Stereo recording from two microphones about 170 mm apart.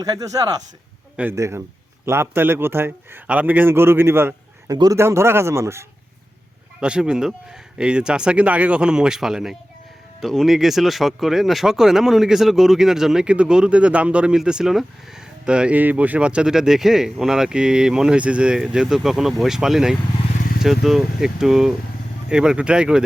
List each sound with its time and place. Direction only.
0.0 s speech: 20° right (ahead or behind)
1.1 s a man's voice: 10° right (ahead or behind)